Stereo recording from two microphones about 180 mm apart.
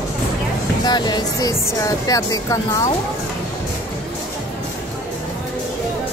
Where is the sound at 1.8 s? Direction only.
20° left (ahead or behind).